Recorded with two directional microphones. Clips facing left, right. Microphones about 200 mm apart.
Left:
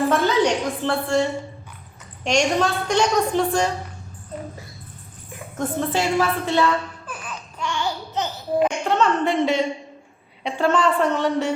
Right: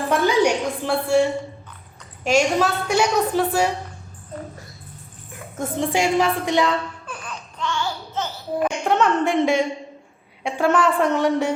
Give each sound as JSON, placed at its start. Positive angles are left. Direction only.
{"t": 0.1, "sound": "a woman's voice", "side_deg": -10}
{"t": 5.5, "sound": "a woman's voice", "side_deg": -15}
{"t": 7.1, "sound": "laughter", "side_deg": 10}
{"t": 8.8, "sound": "a woman's voice", "side_deg": -15}